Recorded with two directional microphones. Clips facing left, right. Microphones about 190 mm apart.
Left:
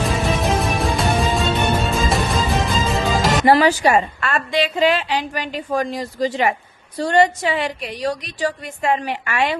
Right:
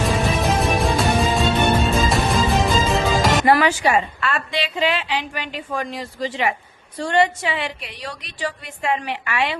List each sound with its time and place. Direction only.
0.6 s music: centre (ahead or behind)
3.4 s a woman's voice: 35° left (ahead or behind)